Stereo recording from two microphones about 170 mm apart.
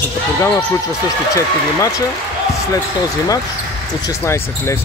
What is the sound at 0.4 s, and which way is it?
Speech, 10° left (ahead or behind).